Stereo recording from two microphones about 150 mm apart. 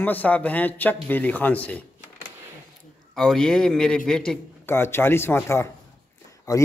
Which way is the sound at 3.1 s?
5° left (ahead or behind).